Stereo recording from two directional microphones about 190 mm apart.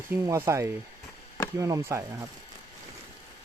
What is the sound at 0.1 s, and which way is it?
Speech, 15° right (ahead or behind).